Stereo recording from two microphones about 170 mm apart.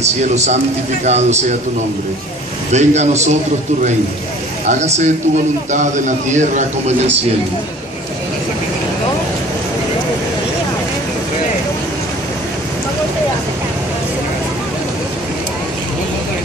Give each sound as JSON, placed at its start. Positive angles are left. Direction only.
{"t": 0.0, "sound": "a man's voice", "side_deg": -40}
{"t": 2.7, "sound": "a man's voice", "side_deg": -40}
{"t": 4.6, "sound": "a man's voice", "side_deg": -40}